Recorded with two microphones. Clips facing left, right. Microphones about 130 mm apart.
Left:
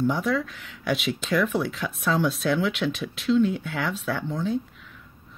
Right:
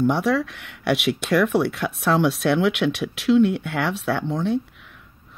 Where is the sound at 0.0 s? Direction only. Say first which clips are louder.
Right 4 dB; 75° right (ahead or behind).